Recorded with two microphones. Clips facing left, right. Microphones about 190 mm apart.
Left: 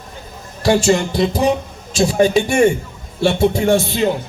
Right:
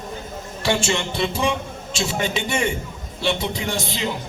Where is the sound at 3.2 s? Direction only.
55° left (ahead or behind).